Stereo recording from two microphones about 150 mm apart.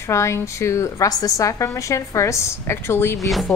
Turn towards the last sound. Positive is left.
turn(degrees=15)  # may be behind; listen again after turning